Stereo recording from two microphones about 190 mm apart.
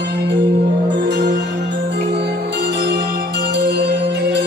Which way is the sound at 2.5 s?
65° right (ahead or behind).